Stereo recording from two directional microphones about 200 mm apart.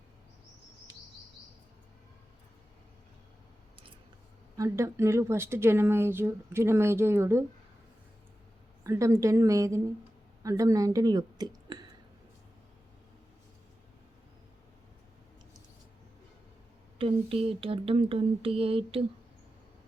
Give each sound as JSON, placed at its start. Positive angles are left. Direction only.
{"t": 4.5, "sound": "speech", "side_deg": -15}
{"t": 8.8, "sound": "a woman's voice", "side_deg": -15}
{"t": 17.0, "sound": "a sound", "side_deg": -25}